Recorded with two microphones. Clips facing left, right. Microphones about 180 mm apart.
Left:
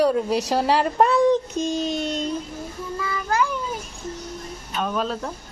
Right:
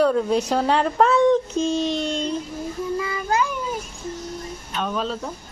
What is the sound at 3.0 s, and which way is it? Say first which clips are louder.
Child singing: left 2 dB; 20° right (ahead or behind).